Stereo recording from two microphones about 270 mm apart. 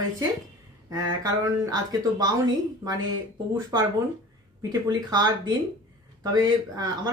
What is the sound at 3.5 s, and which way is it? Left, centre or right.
Speech, centre.